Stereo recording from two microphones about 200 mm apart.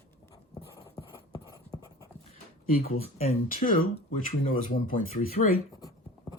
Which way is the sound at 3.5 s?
45° left (ahead or behind).